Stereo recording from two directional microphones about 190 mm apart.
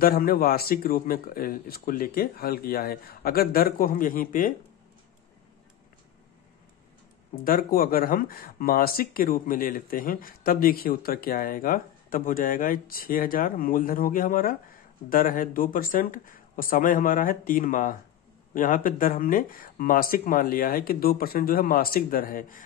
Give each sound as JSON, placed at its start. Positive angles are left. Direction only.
{"t": 0.0, "sound": "speech", "side_deg": 50}
{"t": 7.3, "sound": "speech", "side_deg": 50}